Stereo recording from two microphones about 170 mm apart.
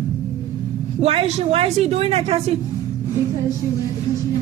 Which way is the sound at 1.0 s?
35° right (ahead or behind).